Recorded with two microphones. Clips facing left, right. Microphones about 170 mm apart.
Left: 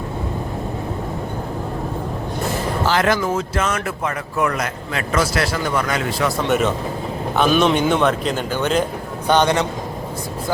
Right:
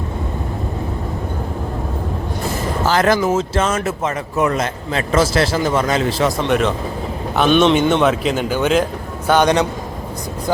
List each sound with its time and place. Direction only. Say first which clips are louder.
2.8 s speech: right 3 dB; 40° right (ahead or behind)
3.2 s speech: right 4 dB; 25° right (ahead or behind)
6.5 s a man's voice: right 1 dB; centre (ahead or behind); by 9.6 s 15° right (ahead or behind)